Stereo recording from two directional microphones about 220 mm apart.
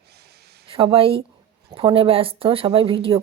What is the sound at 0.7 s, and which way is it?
A woman's voice, 25° right (ahead or behind).